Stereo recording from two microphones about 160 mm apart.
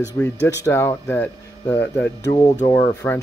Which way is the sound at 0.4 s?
90° left.